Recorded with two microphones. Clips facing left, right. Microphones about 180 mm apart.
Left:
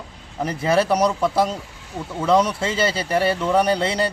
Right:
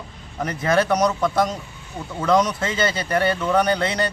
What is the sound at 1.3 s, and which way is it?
Speech, 30° left (ahead or behind).